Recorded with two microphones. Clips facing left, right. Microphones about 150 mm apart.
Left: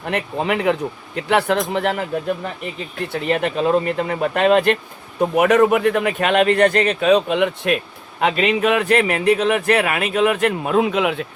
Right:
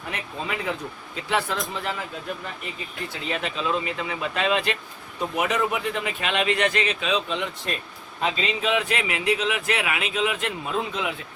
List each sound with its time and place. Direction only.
0.0 s speech: 70° left (ahead or behind)
3.1 s speech: 60° left (ahead or behind); by 11.3 s 75° left (ahead or behind)